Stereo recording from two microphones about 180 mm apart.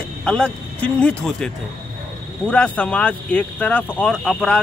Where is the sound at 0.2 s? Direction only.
5° left (ahead or behind).